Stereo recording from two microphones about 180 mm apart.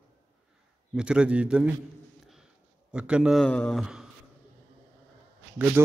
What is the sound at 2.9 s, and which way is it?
A man's voice, 5° right (ahead or behind).